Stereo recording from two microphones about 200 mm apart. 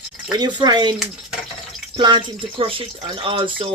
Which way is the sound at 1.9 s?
20° right (ahead or behind).